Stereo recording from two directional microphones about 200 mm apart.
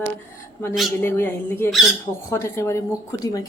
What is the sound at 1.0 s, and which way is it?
A woman's voice, 10° left (ahead or behind).